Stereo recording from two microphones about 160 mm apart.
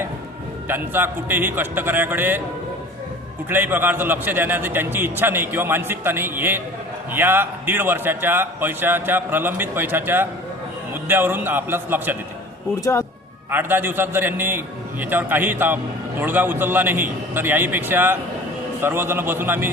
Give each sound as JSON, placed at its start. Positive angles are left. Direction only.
{"t": 0.7, "sound": "a man's voice", "side_deg": -15}
{"t": 3.5, "sound": "a man's voice", "side_deg": -15}
{"t": 12.8, "sound": "speech", "side_deg": 15}
{"t": 13.5, "sound": "a man's voice", "side_deg": -15}